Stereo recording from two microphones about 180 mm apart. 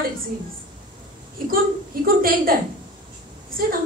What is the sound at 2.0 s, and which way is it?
A woman's voice, 55° right (ahead or behind).